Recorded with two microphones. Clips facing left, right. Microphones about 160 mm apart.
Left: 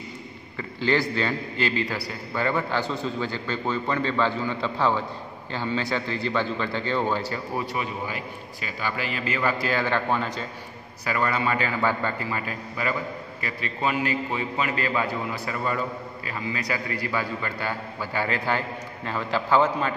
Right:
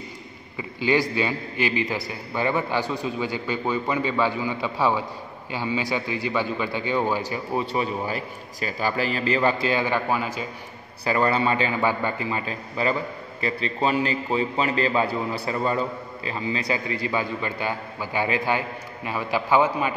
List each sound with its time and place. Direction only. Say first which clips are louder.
0.6 s a man's voice: right 2 dB; 15° right (ahead or behind)
7.6 s a man's voice: right 4 dB; 30° right (ahead or behind); by 10.4 s 5° right (ahead or behind)
11.1 s a man's voice: right 4 dB; 30° right (ahead or behind); by 19.9 s 15° right (ahead or behind)